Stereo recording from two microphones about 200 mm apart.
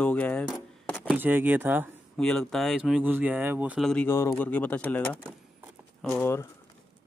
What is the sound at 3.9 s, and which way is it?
Speech, 10° left (ahead or behind).